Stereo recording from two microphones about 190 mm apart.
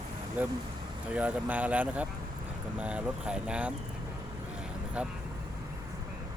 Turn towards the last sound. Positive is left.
turn(degrees=-5)  # may be behind; listen again after turning